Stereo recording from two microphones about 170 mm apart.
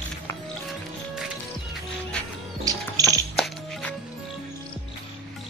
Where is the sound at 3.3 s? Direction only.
5° left (ahead or behind).